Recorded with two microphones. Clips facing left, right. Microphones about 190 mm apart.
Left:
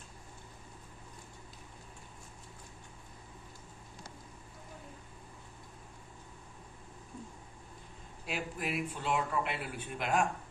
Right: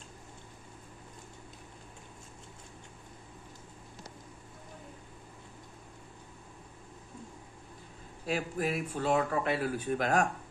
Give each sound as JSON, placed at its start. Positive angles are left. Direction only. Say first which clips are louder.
{"t": 8.3, "sound": "speech", "louder": "right 5 dB", "side_deg": -40}